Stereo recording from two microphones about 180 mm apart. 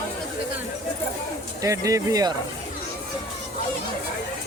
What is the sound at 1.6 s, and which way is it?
Speech, 20° right (ahead or behind).